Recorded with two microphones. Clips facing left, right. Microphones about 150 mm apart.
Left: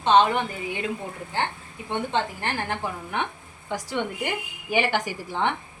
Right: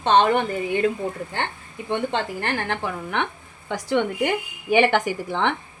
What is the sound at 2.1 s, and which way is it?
Speech, 65° right (ahead or behind).